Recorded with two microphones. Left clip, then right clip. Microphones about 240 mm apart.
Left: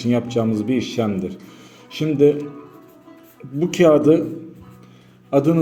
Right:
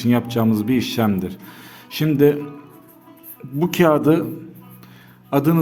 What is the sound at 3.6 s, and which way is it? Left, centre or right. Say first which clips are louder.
Speech: left 2 dB; right.